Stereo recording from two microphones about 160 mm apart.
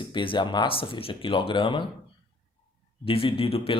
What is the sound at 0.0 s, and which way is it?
Speech, 30° left (ahead or behind).